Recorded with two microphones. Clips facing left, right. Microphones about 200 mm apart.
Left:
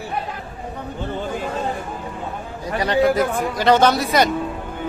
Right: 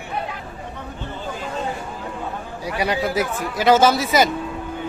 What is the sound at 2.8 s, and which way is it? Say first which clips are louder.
Speech: left 5 dB; 10° right (ahead or behind).